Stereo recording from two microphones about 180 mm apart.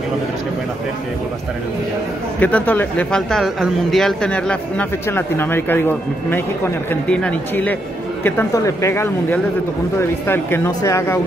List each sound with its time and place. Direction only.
2.4 s speech: 10° left (ahead or behind)